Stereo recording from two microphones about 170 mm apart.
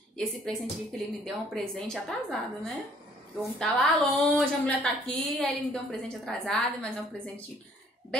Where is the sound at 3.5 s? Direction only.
Centre (ahead or behind).